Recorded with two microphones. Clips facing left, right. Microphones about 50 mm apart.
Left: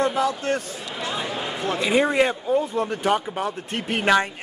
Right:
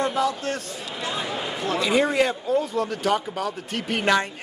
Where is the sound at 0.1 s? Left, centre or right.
Left.